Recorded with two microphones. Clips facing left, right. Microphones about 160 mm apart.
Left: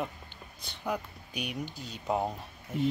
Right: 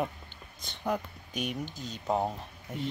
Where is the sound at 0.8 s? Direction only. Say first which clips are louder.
Right 2 dB; centre (ahead or behind).